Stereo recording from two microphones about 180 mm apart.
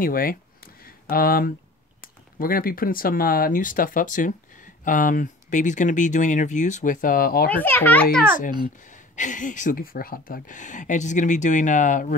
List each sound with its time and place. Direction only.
0.0 s speech: 55° left (ahead or behind)
7.5 s a child's voice: 10° left (ahead or behind)
8.8 s speech: 45° left (ahead or behind)